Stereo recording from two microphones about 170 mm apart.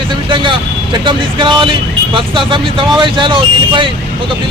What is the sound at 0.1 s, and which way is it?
Speech, 30° right (ahead or behind).